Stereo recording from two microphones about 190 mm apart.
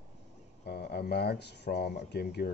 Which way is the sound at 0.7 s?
55° left (ahead or behind).